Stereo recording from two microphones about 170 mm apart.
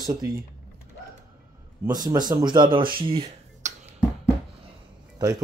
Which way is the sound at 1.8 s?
20° right (ahead or behind).